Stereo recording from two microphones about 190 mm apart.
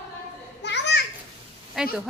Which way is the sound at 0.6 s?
65° left (ahead or behind).